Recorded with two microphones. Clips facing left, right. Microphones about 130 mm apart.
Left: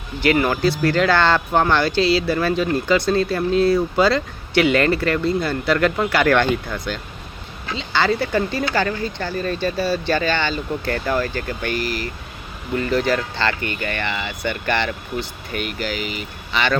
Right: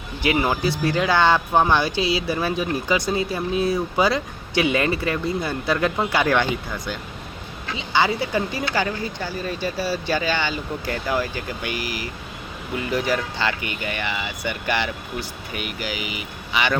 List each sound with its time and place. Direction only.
0.2 s speech: 15° right (ahead or behind)
7.8 s speech: 15° right (ahead or behind)